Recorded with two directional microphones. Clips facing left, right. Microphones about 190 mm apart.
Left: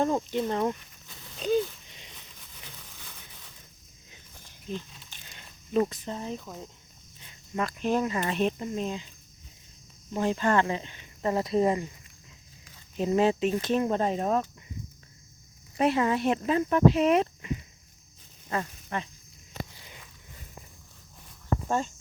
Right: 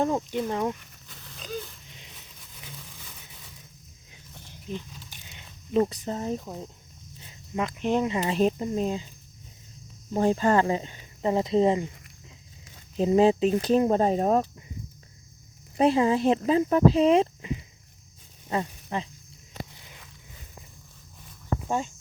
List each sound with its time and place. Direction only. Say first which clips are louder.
0.0 s speech: even; 10° right (ahead or behind)
4.7 s a sound: even; 10° right (ahead or behind)
6.1 s speech: right 5 dB; 40° right (ahead or behind)
7.5 s speech: right 2 dB; 15° right (ahead or behind); by 9.0 s 35° right (ahead or behind)
10.1 s speech: right 4 dB; 40° right (ahead or behind)
11.2 s speech: right 3 dB; 20° right (ahead or behind); by 14.4 s 35° right (ahead or behind)
15.8 s speech: right 4 dB; 30° right (ahead or behind)